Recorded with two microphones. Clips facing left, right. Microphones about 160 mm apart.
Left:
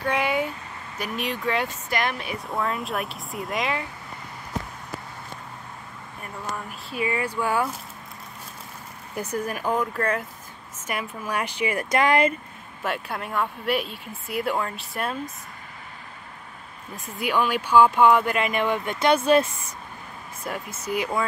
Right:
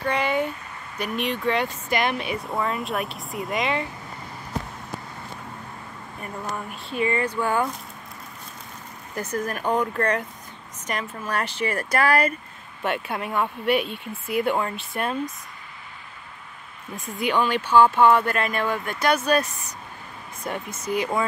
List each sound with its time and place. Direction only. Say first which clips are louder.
0.0 s speech: right 1 dB; 10° left (ahead or behind)
6.7 s speech: right 3 dB; 5° left (ahead or behind)
9.1 s speech: right 1 dB; 10° left (ahead or behind)
12.8 s speech: right 3 dB; centre (ahead or behind)
16.9 s speech: right 1 dB; 5° left (ahead or behind); by 19.7 s 25° left (ahead or behind)
20.4 s speech: right 2 dB; 5° left (ahead or behind)